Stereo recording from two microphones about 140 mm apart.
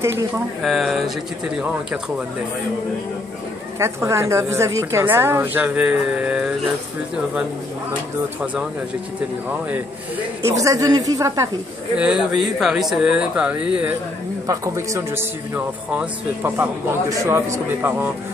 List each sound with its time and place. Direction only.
0.0 s speech: 20° right (ahead or behind)
0.6 s speech: centre (ahead or behind)
3.8 s a woman's voice: 20° right (ahead or behind)
10.5 s speech: 25° right (ahead or behind)
12.0 s a woman's voice: 5° right (ahead or behind)
14.5 s a woman's voice: 20° right (ahead or behind)